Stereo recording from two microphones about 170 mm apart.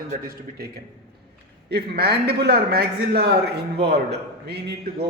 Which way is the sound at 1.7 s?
70° right (ahead or behind).